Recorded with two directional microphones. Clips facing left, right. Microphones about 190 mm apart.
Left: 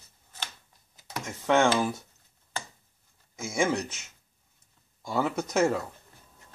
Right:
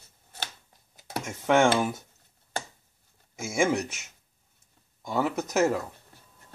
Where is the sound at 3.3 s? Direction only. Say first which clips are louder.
Right 2 dB; 10° right (ahead or behind).